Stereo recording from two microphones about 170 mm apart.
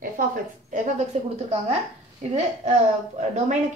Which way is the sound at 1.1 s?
40° right (ahead or behind).